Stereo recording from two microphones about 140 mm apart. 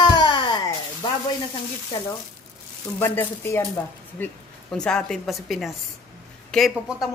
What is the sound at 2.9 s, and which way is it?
Speech, 15° left (ahead or behind).